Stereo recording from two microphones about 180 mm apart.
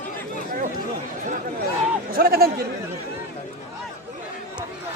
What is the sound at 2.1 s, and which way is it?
Chatter, 55° right (ahead or behind).